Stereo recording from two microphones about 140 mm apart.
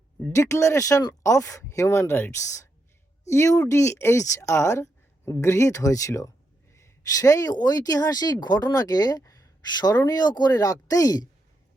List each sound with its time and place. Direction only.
0.3 s speech: 20° left (ahead or behind)